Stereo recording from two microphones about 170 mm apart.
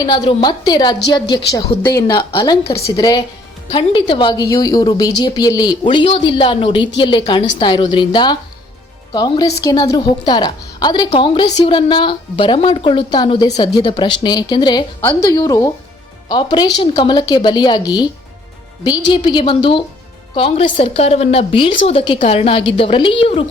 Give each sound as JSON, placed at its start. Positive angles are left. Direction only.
{"t": 0.0, "sound": "a woman's voice", "side_deg": 30}